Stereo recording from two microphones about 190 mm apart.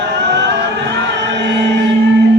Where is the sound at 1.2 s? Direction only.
65° right (ahead or behind).